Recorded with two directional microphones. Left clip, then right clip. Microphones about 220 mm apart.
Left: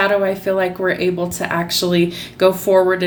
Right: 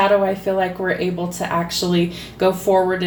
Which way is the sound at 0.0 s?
30° left (ahead or behind).